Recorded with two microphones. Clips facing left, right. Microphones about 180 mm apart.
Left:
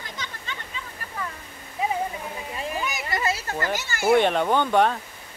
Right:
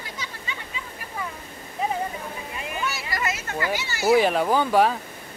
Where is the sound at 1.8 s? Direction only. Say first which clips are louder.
Even; centre (ahead or behind).